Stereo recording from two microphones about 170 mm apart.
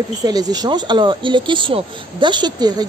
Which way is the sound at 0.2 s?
20° right (ahead or behind).